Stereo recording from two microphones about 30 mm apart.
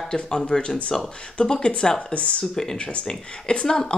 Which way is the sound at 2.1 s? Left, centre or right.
Left.